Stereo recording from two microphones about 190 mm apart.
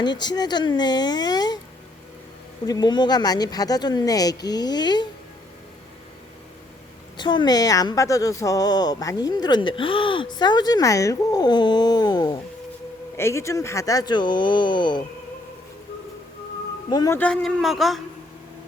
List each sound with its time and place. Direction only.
0.0 s speech: 20° left (ahead or behind)
2.6 s speech: 20° left (ahead or behind)
7.2 s speech: 25° left (ahead or behind)
16.9 s speech: 20° left (ahead or behind)
17.2 s speech: 5° left (ahead or behind)